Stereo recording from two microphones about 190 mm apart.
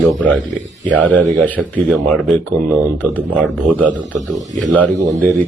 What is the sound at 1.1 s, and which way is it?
Speech, 5° left (ahead or behind).